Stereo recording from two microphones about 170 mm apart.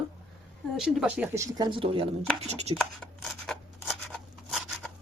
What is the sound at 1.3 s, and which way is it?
Speech, 20° right (ahead or behind).